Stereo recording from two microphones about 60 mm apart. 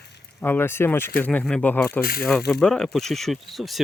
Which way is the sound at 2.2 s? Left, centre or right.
Centre.